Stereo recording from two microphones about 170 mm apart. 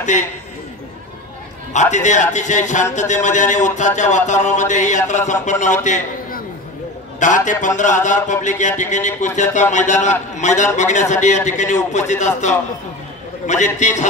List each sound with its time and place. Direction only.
1.7 s a man's voice: 45° left (ahead or behind)
13.7 s a man's voice: 45° left (ahead or behind)